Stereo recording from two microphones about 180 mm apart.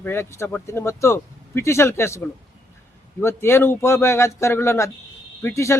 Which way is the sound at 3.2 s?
15° left (ahead or behind).